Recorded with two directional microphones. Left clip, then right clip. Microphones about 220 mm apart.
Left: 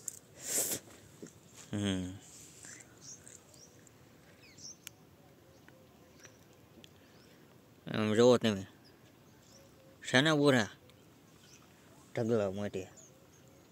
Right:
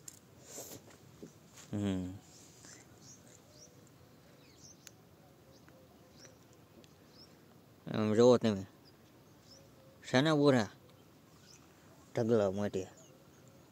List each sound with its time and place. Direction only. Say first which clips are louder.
0.5 s a sound: left 12 dB; 40° left (ahead or behind)
1.7 s speech: left 2 dB; centre (ahead or behind)
7.8 s speech: even; 5° right (ahead or behind)
10.0 s speech: left 1 dB; 5° right (ahead or behind)
12.1 s speech: right 2 dB; 15° right (ahead or behind)